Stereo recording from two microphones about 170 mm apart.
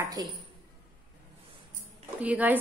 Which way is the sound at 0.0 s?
20° right (ahead or behind).